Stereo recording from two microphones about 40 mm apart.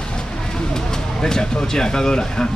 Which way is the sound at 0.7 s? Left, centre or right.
Centre.